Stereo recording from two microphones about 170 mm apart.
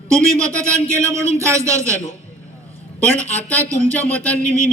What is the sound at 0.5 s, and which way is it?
Speech, 15° right (ahead or behind).